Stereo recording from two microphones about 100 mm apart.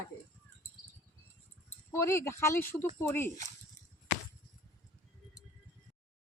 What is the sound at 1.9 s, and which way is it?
Speech, 25° left (ahead or behind).